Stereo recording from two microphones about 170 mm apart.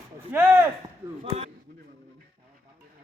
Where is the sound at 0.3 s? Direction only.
15° right (ahead or behind).